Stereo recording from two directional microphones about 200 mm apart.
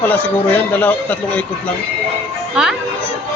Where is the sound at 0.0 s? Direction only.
10° left (ahead or behind).